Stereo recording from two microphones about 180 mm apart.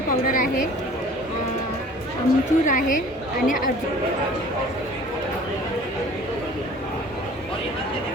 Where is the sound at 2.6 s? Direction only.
45° left (ahead or behind).